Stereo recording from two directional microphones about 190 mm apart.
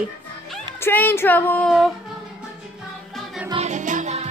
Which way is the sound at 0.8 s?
10° left (ahead or behind).